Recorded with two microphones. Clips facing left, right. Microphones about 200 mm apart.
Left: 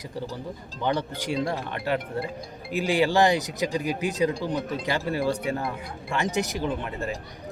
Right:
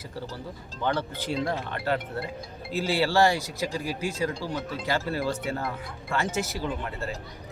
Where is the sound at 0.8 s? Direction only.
15° left (ahead or behind).